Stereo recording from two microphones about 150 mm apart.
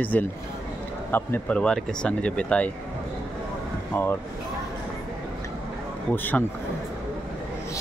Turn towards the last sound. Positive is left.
turn(degrees=10)  # may be behind; listen again after turning